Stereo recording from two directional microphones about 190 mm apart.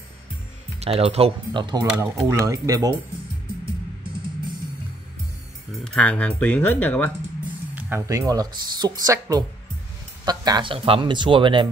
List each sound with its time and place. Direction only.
0.7 s speech: 30° right (ahead or behind)
5.9 s speech: 5° left (ahead or behind)
7.7 s speech: 15° right (ahead or behind)